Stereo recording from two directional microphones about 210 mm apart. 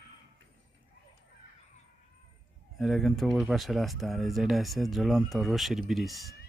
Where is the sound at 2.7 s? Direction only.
Centre (ahead or behind).